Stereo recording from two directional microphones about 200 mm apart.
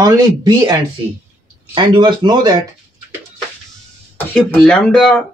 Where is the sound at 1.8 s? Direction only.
20° right (ahead or behind).